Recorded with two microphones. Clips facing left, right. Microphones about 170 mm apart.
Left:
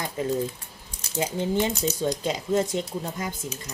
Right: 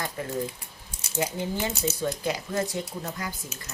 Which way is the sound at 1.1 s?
25° left (ahead or behind).